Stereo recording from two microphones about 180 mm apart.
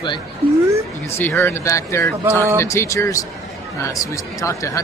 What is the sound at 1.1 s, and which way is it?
Speech, 10° left (ahead or behind).